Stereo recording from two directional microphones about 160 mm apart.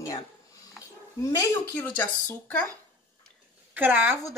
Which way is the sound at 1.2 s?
20° left (ahead or behind).